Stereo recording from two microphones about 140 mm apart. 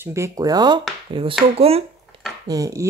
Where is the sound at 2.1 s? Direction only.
40° right (ahead or behind).